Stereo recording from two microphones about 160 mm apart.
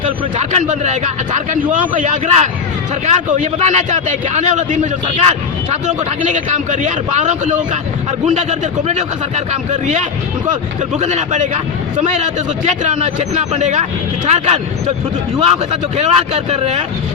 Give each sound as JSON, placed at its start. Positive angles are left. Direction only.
{"t": 0.0, "sound": "a man's voice", "side_deg": -45}
{"t": 16.0, "sound": "a man's voice", "side_deg": -45}